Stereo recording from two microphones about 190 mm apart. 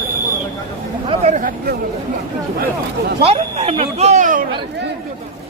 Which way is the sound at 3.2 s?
30° right (ahead or behind).